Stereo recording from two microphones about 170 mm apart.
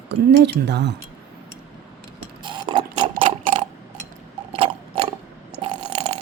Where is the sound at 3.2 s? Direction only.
35° right (ahead or behind).